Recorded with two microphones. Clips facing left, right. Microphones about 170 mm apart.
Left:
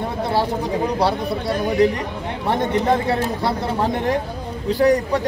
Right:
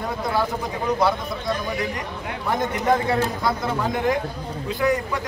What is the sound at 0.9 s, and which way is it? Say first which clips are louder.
Speech: left 2 dB; 35° left (ahead or behind).